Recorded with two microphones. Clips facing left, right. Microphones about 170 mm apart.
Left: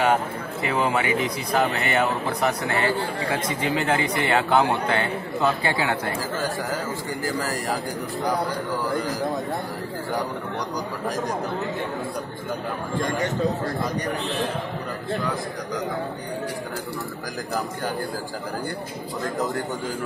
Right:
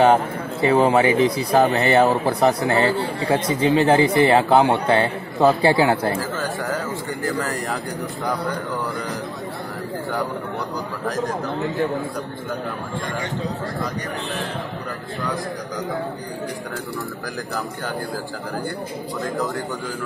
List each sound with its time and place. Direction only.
0.0 s speech: 30° right (ahead or behind)